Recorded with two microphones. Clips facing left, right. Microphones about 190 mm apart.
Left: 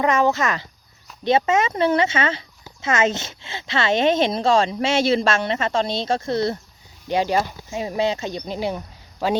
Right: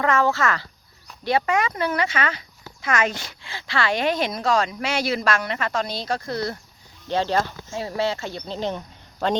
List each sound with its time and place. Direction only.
0.0 s a woman's voice: 20° left (ahead or behind)
7.1 s speech: 15° left (ahead or behind)